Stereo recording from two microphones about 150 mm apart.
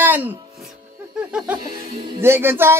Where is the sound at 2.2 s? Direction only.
15° right (ahead or behind).